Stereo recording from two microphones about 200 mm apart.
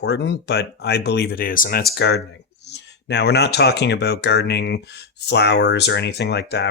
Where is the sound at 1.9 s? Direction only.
55° left (ahead or behind).